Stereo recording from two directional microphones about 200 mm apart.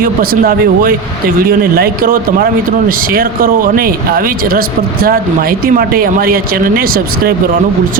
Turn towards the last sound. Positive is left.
turn(degrees=-45)  # may be behind; listen again after turning